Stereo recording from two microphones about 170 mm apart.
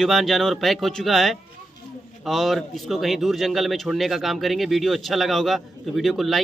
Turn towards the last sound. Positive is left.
turn(degrees=0)  # may be behind; listen again after turning